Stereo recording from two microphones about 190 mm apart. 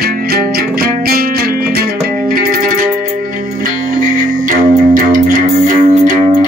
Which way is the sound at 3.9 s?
45° right (ahead or behind).